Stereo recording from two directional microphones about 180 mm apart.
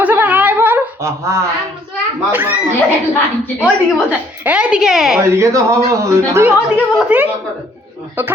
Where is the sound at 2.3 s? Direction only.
10° right (ahead or behind).